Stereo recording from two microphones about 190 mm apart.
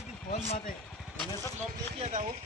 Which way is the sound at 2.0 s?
35° right (ahead or behind).